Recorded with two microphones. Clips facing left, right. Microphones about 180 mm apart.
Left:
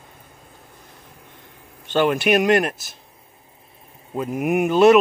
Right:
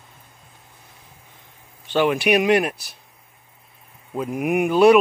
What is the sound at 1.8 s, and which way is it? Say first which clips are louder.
Speech: even; centre (ahead or behind).